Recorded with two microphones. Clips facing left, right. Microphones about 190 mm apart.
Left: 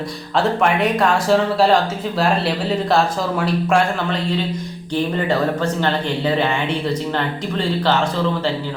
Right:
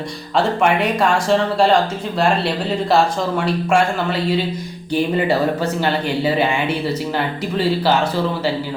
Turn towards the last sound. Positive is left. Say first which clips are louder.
# right 2 dB
turn(degrees=-10)  # may be behind; listen again after turning